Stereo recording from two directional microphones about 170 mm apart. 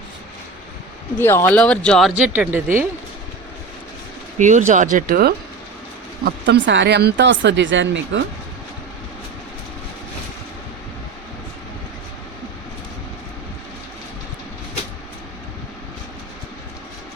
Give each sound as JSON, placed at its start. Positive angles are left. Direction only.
{"t": 1.2, "sound": "speech", "side_deg": 15}
{"t": 4.4, "sound": "speech", "side_deg": -45}
{"t": 6.2, "sound": "speech", "side_deg": -80}